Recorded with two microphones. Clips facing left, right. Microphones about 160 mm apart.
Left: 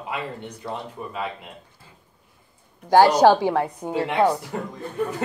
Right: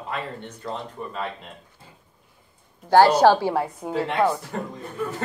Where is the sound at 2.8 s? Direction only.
15° left (ahead or behind).